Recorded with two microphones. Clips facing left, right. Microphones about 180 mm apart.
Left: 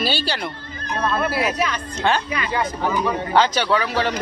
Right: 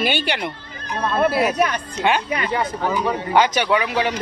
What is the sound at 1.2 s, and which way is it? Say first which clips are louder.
Speech: right 8 dB; 55° right (ahead or behind).